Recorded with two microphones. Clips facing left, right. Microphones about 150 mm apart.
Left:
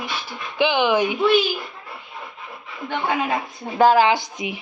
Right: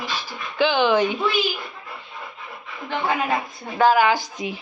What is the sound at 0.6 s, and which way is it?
Speech, 15° left (ahead or behind).